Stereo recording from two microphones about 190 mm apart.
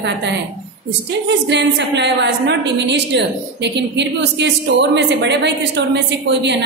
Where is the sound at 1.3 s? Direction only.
65° right (ahead or behind).